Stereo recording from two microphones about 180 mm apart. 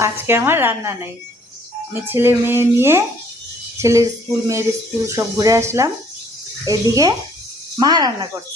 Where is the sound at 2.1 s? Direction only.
10° right (ahead or behind).